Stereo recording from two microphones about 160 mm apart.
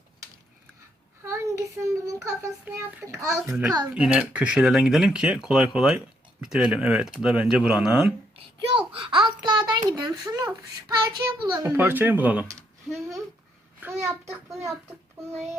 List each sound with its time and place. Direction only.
1.2 s a child's voice: 15° right (ahead or behind)
3.9 s speech: 5° right (ahead or behind)
8.7 s a child's voice: 30° right (ahead or behind)
11.6 s speech: 10° right (ahead or behind)
13.8 s a child's voice: 10° right (ahead or behind)